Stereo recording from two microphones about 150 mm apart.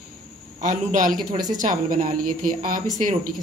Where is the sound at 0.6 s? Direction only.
55° right (ahead or behind).